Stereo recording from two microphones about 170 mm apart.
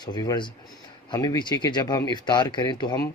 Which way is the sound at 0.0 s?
25° left (ahead or behind).